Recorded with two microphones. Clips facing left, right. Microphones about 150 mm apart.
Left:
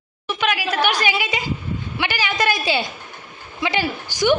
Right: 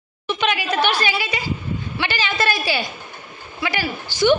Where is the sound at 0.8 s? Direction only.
15° left (ahead or behind).